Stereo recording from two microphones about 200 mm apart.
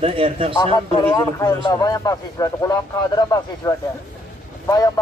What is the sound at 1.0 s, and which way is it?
Speech, 15° left (ahead or behind).